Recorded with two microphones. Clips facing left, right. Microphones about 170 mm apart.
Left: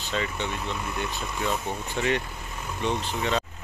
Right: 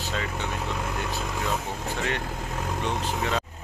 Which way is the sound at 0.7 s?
90° right.